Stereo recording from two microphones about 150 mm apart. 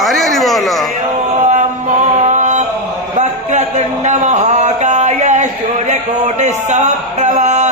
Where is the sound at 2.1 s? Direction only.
55° right (ahead or behind).